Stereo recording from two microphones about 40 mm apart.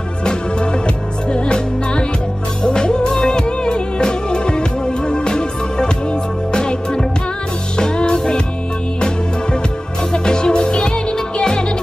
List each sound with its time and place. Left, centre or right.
0.2 s music: left
10.1 s music: left